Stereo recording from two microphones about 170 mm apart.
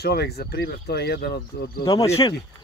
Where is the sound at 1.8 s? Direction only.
20° left (ahead or behind).